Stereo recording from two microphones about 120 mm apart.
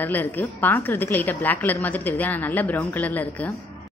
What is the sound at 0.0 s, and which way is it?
Speech, 15° left (ahead or behind).